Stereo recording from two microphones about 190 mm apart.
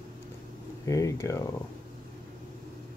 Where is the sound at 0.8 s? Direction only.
15° left (ahead or behind).